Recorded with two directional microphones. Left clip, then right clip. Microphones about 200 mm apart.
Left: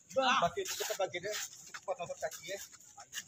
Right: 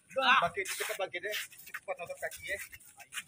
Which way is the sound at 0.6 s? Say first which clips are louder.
Right 2 dB; 30° left (ahead or behind).